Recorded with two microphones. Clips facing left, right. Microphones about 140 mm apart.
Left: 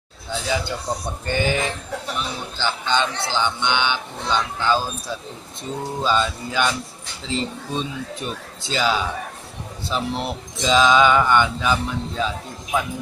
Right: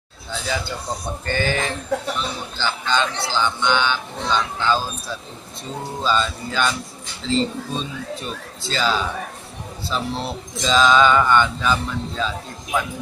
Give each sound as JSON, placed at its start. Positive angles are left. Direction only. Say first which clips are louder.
{"t": 1.2, "sound": "speech", "louder": "left 1 dB", "side_deg": 15}